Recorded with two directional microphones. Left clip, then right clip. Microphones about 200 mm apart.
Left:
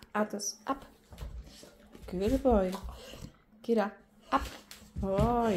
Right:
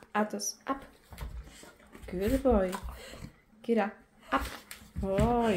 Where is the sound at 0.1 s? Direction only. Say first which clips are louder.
Right 1 dB; centre (ahead or behind).